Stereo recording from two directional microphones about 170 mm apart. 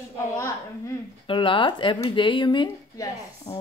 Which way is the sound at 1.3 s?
30° left (ahead or behind).